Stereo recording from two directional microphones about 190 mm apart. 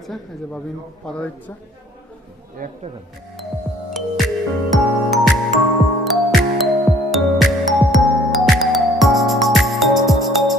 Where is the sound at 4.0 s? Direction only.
Centre (ahead or behind).